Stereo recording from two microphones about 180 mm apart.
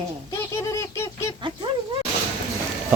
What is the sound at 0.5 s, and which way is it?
Squawk, 15° left (ahead or behind).